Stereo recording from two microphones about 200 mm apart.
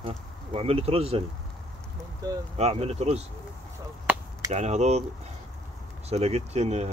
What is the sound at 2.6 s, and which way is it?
Speech, 30° right (ahead or behind).